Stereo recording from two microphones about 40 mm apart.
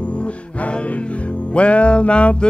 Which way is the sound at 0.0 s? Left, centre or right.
Left.